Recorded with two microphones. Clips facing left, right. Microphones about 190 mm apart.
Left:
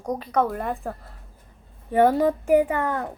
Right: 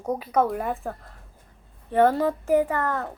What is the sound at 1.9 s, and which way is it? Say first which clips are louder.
A child's voice: left 2 dB; 10° left (ahead or behind).